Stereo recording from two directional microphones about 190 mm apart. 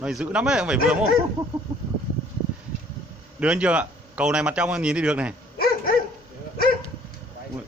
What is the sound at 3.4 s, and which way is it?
A man's voice, 5° right (ahead or behind).